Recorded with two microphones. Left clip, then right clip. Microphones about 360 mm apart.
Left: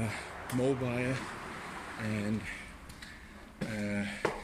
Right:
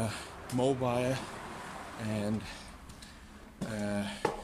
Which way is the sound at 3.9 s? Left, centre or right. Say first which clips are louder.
Right 1 dB; centre.